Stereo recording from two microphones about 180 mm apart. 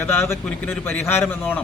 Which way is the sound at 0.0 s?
15° left (ahead or behind).